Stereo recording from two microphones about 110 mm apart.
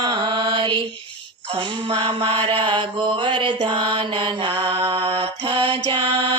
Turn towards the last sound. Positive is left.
turn(degrees=-45)  # may be behind; listen again after turning